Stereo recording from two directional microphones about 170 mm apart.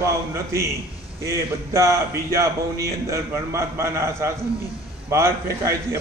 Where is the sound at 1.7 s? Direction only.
15° right (ahead or behind).